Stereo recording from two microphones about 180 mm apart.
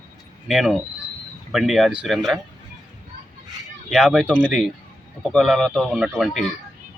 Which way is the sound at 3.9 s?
Centre (ahead or behind).